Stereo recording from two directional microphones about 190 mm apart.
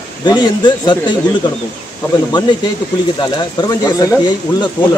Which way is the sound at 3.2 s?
20° left (ahead or behind).